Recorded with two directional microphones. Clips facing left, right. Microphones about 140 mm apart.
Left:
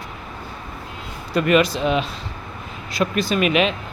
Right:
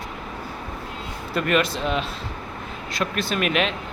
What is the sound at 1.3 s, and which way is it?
Speech, centre (ahead or behind).